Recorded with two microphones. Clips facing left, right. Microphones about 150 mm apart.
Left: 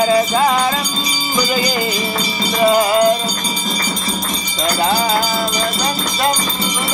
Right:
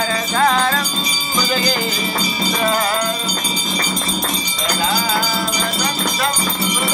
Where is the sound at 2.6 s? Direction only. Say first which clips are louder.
Left 7 dB; 15° left (ahead or behind).